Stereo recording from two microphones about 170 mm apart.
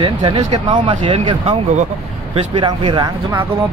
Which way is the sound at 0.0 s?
30° right (ahead or behind).